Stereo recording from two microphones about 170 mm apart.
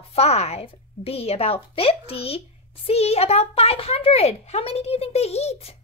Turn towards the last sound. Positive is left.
turn(degrees=35)  # may be behind; listen again after turning